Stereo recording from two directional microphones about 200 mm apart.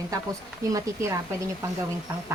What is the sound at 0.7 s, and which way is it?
Speech, 15° right (ahead or behind).